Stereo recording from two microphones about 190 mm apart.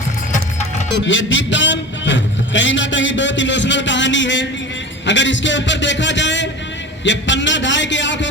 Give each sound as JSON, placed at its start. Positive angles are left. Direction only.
{"t": 0.9, "sound": "a man's voice", "side_deg": 80}